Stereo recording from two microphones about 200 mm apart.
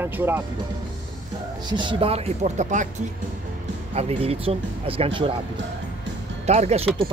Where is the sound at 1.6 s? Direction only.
25° right (ahead or behind).